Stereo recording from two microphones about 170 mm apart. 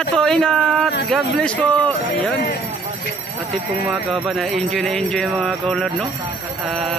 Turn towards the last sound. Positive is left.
turn(degrees=0)  # may be behind; listen again after turning